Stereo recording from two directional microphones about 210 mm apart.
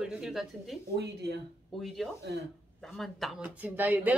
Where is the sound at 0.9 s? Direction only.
50° right (ahead or behind).